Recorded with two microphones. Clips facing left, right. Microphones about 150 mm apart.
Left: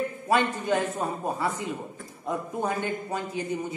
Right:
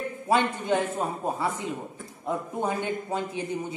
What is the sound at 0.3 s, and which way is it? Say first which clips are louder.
A woman's voice: right 1 dB; 20° right (ahead or behind).